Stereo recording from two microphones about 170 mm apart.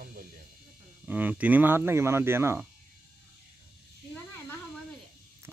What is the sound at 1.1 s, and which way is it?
Speech, 10° right (ahead or behind).